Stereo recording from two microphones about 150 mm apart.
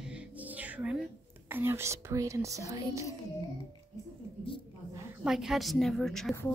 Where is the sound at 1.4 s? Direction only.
15° right (ahead or behind).